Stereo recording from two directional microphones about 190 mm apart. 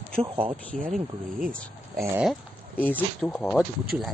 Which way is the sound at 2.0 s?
10° right (ahead or behind).